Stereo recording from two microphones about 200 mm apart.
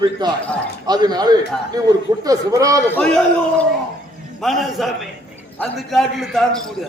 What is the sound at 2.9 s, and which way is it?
A man's voice, 5° left (ahead or behind).